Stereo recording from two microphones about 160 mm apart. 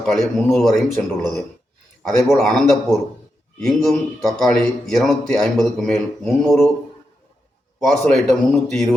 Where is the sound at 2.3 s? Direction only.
Centre (ahead or behind).